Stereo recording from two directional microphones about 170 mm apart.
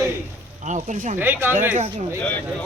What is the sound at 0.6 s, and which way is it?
Speech, 45° right (ahead or behind).